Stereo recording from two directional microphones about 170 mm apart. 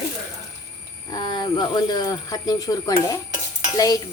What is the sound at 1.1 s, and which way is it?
Speech, 25° left (ahead or behind).